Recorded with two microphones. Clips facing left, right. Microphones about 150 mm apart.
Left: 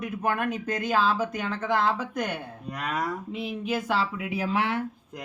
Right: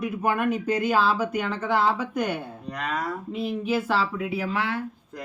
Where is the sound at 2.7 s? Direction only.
10° left (ahead or behind).